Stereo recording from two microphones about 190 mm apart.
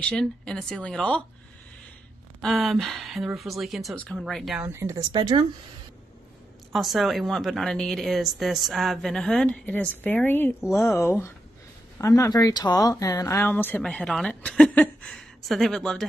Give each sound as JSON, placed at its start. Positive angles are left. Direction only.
{"t": 0.0, "sound": "a woman's voice", "side_deg": 5}
{"t": 2.4, "sound": "a woman's voice", "side_deg": 0}
{"t": 4.6, "sound": "speech", "side_deg": -15}
{"t": 6.7, "sound": "a woman's voice", "side_deg": 0}